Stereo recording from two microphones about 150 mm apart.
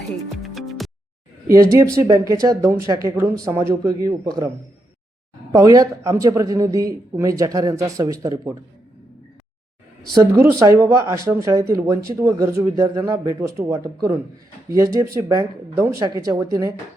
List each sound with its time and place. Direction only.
0.4 s music: centre (ahead or behind)
1.7 s speech: 20° right (ahead or behind)
10.3 s speech: 15° right (ahead or behind)